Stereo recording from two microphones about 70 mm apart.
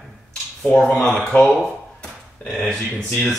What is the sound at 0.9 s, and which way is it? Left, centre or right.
Speech, centre.